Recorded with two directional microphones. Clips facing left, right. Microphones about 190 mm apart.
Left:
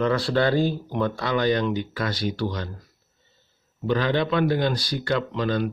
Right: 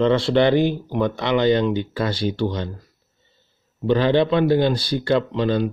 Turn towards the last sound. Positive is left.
turn(degrees=-30)  # may be behind; listen again after turning